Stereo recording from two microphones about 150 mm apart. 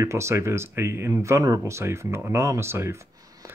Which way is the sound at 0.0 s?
20° right (ahead or behind).